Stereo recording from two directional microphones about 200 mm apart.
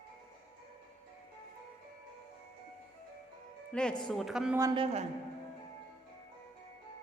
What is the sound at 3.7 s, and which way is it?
Speech, 5° left (ahead or behind).